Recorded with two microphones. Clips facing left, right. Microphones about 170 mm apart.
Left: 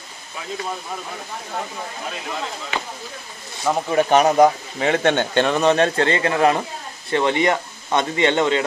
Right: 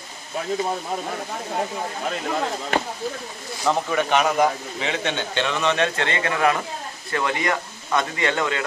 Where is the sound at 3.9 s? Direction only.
40° left (ahead or behind).